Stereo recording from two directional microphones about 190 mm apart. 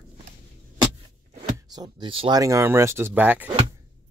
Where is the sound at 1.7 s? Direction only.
25° right (ahead or behind).